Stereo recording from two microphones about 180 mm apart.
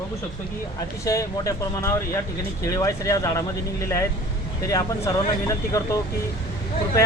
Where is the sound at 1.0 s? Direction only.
20° left (ahead or behind).